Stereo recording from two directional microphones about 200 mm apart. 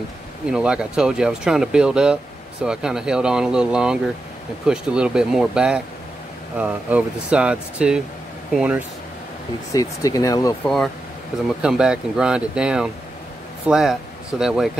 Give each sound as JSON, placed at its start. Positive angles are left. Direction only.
{"t": 0.5, "sound": "speech", "side_deg": -5}
{"t": 9.7, "sound": "speech", "side_deg": 15}
{"t": 11.6, "sound": "speech", "side_deg": -5}